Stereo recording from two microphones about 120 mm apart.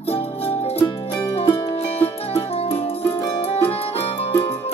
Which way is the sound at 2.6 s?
55° left (ahead or behind).